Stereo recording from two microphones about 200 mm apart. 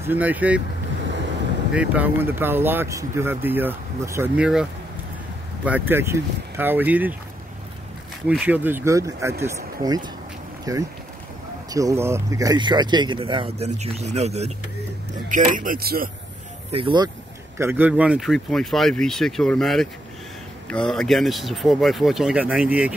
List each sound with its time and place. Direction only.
0.0 s speech: 10° right (ahead or behind)
1.7 s speech: 5° right (ahead or behind)
5.7 s speech: 10° right (ahead or behind)
8.3 s speech: 5° right (ahead or behind)
10.6 s speech: 15° right (ahead or behind); by 16.1 s 50° right (ahead or behind)
16.7 s speech: 25° right (ahead or behind)
17.6 s speech: 10° right (ahead or behind)